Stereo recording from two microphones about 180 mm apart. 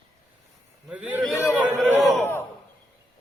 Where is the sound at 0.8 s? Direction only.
10° right (ahead or behind).